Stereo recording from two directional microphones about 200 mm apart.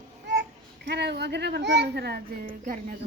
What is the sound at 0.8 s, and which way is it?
A child's voice, 55° right (ahead or behind).